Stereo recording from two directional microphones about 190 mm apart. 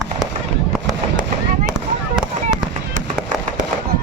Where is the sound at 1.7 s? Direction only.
5° right (ahead or behind).